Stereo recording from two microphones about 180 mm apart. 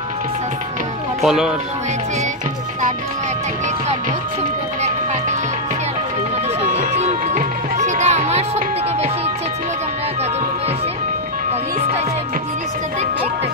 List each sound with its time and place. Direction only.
1.2 s speech: 5° right (ahead or behind)
6.7 s music: 40° right (ahead or behind)